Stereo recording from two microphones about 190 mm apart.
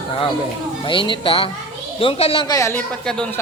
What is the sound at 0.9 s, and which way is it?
A man's voice, 25° left (ahead or behind).